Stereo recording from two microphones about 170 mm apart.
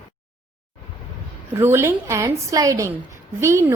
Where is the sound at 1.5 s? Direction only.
15° right (ahead or behind).